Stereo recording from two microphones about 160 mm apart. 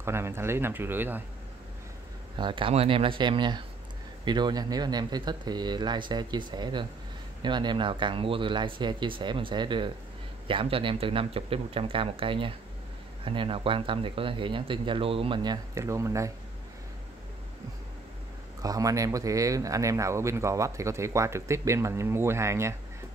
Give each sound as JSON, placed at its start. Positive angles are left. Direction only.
{"t": 0.0, "sound": "speech", "side_deg": -15}
{"t": 2.3, "sound": "speech", "side_deg": -30}
{"t": 18.6, "sound": "speech", "side_deg": -20}